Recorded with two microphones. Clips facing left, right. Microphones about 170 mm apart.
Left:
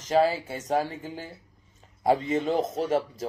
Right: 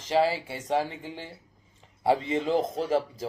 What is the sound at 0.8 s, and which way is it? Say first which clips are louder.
Speech: left 2 dB; 45° left (ahead or behind).